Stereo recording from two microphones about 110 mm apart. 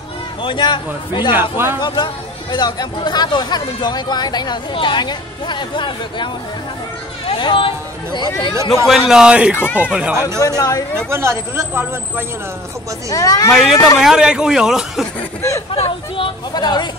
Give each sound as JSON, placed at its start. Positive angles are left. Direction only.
{"t": 0.4, "sound": "a man's voice", "side_deg": 50}
{"t": 1.3, "sound": "speech", "side_deg": -20}
{"t": 1.8, "sound": "a man's voice", "side_deg": 45}
{"t": 7.2, "sound": "a sound", "side_deg": 50}
{"t": 8.8, "sound": "a man's voice", "side_deg": -5}
{"t": 10.4, "sound": "speech", "side_deg": 30}
{"t": 11.1, "sound": "speech", "side_deg": -25}
{"t": 13.1, "sound": "speech", "side_deg": 30}
{"t": 13.5, "sound": "speech", "side_deg": 5}
{"t": 14.0, "sound": "a man's voice", "side_deg": -5}
{"t": 15.7, "sound": "speech", "side_deg": 60}
{"t": 16.5, "sound": "speech", "side_deg": 40}